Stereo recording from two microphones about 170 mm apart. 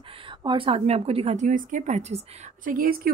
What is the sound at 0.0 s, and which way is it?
A woman's voice, 30° right (ahead or behind).